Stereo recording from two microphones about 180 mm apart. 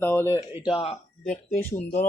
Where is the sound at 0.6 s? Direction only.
30° left (ahead or behind).